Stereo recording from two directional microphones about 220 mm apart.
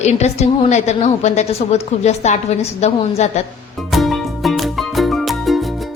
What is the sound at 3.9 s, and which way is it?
Music, centre (ahead or behind).